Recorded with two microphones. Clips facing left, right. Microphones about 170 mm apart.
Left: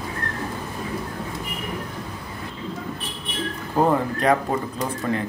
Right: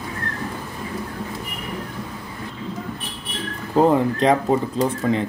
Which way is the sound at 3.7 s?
20° right (ahead or behind).